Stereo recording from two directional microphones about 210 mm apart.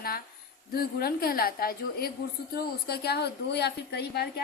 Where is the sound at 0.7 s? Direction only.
45° left (ahead or behind).